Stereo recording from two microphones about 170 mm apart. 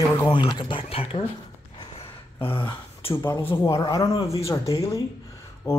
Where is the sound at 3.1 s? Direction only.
10° left (ahead or behind).